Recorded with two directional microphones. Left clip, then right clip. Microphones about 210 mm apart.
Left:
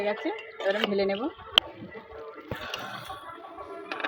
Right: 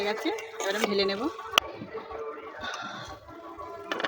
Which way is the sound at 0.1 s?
15° left (ahead or behind).